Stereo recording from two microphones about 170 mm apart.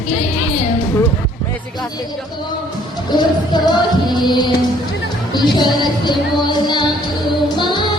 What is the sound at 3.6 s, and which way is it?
Music, 25° left (ahead or behind).